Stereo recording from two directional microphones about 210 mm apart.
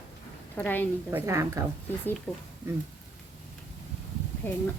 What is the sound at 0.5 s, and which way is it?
Speech, 10° left (ahead or behind).